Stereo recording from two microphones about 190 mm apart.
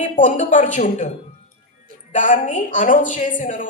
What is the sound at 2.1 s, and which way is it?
A woman's voice, 40° left (ahead or behind).